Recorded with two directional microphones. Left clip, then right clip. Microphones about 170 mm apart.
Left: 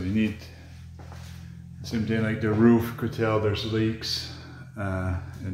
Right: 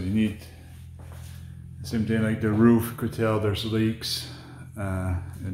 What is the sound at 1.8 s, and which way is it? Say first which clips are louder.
Speech: right 1 dB; 35° right (ahead or behind).